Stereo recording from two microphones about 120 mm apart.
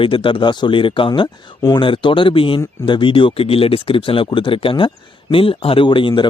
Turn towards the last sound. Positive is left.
turn(degrees=45)  # may be behind; listen again after turning